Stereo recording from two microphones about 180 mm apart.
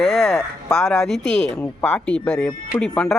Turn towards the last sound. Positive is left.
turn(degrees=0)  # may be behind; listen again after turning